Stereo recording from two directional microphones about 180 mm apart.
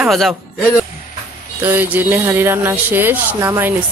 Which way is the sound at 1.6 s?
10° right (ahead or behind).